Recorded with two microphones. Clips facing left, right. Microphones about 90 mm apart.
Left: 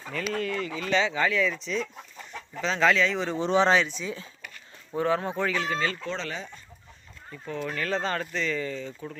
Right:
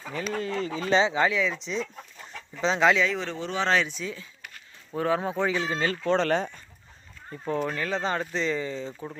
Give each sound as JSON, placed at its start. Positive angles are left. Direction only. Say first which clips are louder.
{"t": 0.3, "sound": "speech", "louder": "right 2 dB", "side_deg": -30}
{"t": 3.1, "sound": "speech", "louder": "left 2 dB", "side_deg": 0}
{"t": 3.3, "sound": "speech", "louder": "left 7 dB", "side_deg": 20}
{"t": 4.9, "sound": "speech", "louder": "even", "side_deg": 0}
{"t": 5.4, "sound": "speech", "louder": "right 1 dB", "side_deg": -15}
{"t": 5.9, "sound": "speech", "louder": "right 9 dB", "side_deg": -50}
{"t": 7.3, "sound": "speech", "louder": "right 5 dB", "side_deg": -35}
{"t": 7.8, "sound": "speech", "louder": "right 1 dB", "side_deg": -15}